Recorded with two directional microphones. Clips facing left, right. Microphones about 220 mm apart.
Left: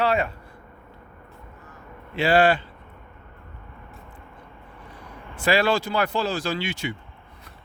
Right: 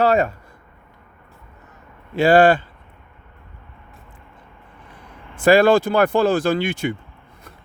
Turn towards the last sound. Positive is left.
turn(degrees=-55)  # may be behind; listen again after turning